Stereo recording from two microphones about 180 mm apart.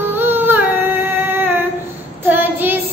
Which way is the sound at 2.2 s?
10° right (ahead or behind).